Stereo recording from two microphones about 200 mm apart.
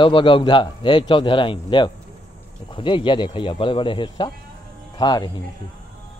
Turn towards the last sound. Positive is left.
turn(degrees=20)  # may be behind; listen again after turning